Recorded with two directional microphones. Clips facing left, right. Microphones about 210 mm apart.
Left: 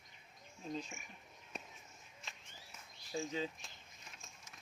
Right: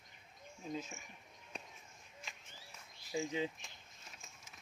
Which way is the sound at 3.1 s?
15° right (ahead or behind).